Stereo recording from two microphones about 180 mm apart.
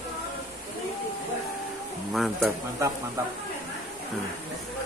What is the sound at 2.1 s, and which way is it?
Speech, centre (ahead or behind).